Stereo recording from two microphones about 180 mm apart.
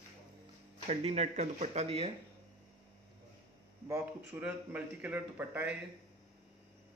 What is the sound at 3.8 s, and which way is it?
Speech, 15° right (ahead or behind).